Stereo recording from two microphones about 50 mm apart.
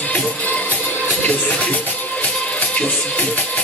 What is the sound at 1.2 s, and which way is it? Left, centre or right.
Music, left.